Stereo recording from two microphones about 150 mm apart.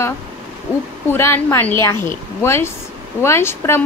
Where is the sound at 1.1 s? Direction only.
15° left (ahead or behind).